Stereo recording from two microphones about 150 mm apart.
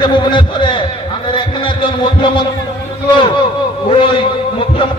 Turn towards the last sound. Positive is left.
turn(degrees=35)  # may be behind; listen again after turning